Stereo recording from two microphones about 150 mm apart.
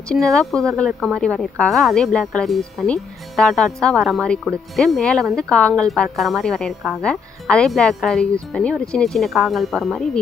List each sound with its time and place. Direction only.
0.1 s speech: 5° left (ahead or behind)